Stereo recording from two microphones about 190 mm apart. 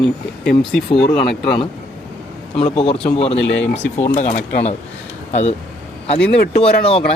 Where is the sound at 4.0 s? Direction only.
40° left (ahead or behind).